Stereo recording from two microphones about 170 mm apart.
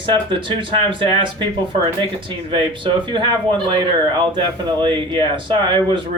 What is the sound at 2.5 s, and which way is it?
Speech, 30° right (ahead or behind).